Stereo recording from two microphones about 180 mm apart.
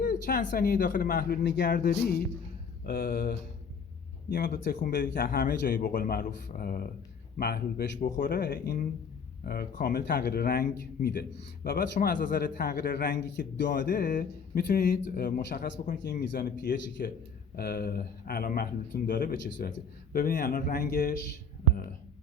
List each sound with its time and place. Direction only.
0.0 s speech: 50° left (ahead or behind)